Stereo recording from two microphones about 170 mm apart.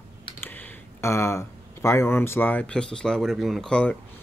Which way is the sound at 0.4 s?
10° left (ahead or behind).